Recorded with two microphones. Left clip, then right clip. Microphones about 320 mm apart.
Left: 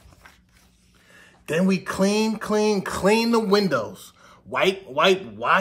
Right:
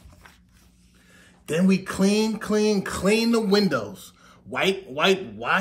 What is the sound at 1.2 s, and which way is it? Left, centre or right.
A man's voice, centre.